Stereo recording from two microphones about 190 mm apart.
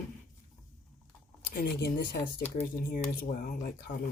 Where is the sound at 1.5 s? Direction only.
50° left (ahead or behind).